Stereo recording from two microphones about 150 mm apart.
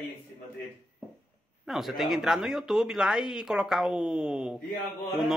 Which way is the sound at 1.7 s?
Centre (ahead or behind).